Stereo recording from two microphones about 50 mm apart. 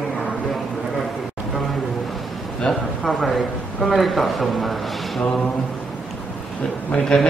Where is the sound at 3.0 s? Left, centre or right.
Centre.